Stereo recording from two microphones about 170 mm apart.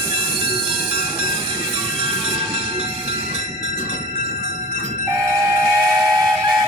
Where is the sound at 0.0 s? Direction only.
30° right (ahead or behind).